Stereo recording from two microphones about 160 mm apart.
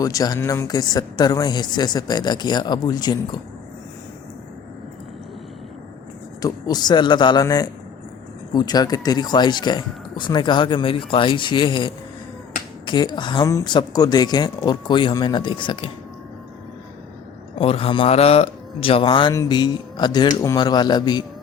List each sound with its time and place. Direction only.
0.0 s speech: 20° left (ahead or behind)
6.4 s speech: 25° left (ahead or behind)
17.6 s speech: 35° left (ahead or behind)